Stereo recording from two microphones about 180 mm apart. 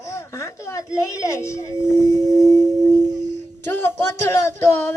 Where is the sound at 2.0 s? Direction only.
20° right (ahead or behind).